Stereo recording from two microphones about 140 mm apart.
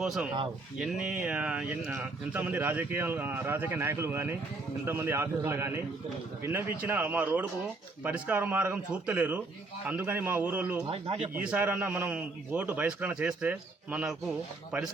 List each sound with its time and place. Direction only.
0.0 s a man's voice: 5° right (ahead or behind)
10.8 s speech: 40° right (ahead or behind)
11.3 s a man's voice: 10° right (ahead or behind)